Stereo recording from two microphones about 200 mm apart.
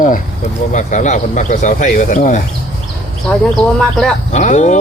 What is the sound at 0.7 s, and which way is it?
Speech, 40° left (ahead or behind).